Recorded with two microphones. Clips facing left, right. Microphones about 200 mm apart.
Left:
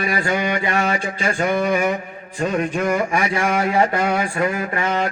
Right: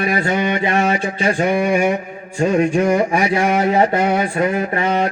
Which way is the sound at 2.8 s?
30° right (ahead or behind).